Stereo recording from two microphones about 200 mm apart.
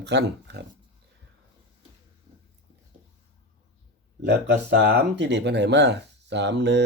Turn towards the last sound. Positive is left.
turn(degrees=-60)  # may be behind; listen again after turning